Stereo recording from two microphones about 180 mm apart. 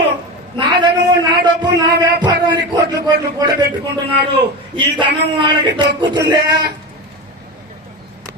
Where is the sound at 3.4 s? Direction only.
20° right (ahead or behind).